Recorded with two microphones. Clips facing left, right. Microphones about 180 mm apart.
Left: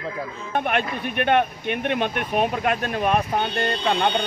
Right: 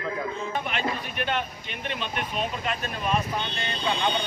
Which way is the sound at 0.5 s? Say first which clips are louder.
Left 9 dB; 55° left (ahead or behind).